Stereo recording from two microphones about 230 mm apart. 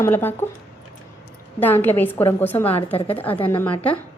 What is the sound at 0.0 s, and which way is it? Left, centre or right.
Speech, centre.